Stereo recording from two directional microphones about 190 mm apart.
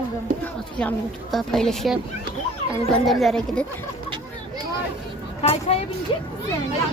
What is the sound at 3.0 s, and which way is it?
Speech, centre (ahead or behind).